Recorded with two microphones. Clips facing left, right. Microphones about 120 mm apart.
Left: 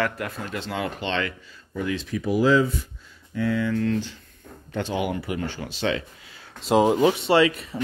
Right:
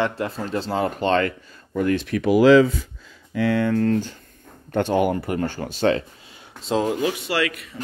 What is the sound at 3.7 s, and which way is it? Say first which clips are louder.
Speech: right 4 dB; 45° right (ahead or behind).